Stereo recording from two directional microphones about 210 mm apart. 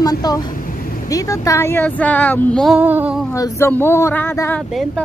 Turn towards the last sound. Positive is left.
turn(degrees=10)  # may be behind; listen again after turning